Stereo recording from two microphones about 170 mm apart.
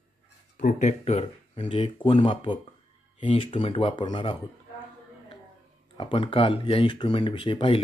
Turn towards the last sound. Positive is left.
turn(degrees=30)  # may be behind; listen again after turning